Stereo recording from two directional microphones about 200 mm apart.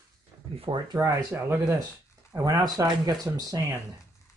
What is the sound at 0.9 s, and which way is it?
Speech, 10° right (ahead or behind).